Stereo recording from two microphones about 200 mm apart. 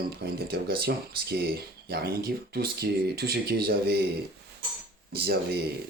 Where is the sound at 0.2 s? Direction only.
55° right (ahead or behind).